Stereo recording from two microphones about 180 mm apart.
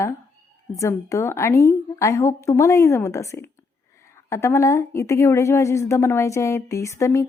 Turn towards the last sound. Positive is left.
turn(degrees=15)  # may be behind; listen again after turning